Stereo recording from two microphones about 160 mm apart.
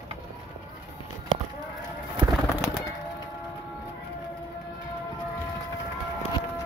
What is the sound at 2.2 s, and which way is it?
Bird, 20° right (ahead or behind).